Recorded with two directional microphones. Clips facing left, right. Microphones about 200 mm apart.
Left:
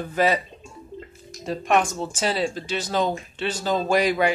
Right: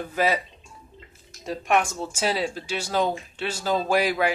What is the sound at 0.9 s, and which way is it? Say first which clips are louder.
Drip: left 14 dB; 45° left (ahead or behind).